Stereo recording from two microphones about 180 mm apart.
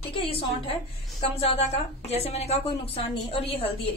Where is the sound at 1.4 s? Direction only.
35° left (ahead or behind).